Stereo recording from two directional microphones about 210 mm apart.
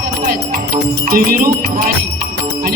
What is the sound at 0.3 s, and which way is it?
Speech, 40° right (ahead or behind).